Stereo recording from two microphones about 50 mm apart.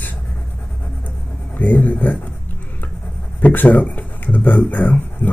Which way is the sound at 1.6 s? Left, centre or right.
Left.